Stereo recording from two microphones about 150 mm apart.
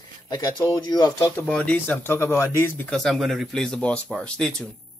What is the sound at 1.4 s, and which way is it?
Speech, 10° left (ahead or behind).